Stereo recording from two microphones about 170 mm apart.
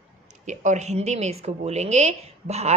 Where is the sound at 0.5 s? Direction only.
45° right (ahead or behind).